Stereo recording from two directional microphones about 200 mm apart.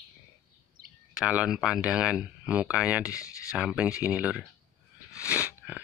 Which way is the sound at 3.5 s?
5° right (ahead or behind).